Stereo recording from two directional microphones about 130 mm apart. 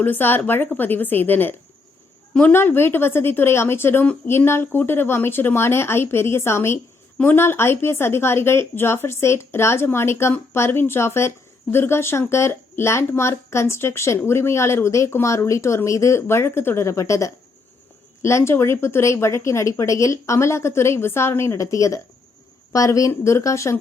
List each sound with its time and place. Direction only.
0.0 s speech: 15° left (ahead or behind)